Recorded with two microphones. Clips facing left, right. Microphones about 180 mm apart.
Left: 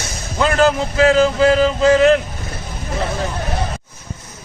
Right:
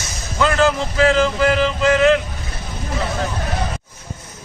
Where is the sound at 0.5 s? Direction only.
40° left (ahead or behind).